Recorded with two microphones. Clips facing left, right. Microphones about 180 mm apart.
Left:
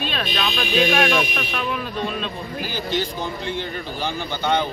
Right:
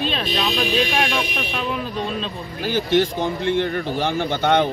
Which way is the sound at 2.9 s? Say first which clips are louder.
Right 7 dB; 60° right (ahead or behind).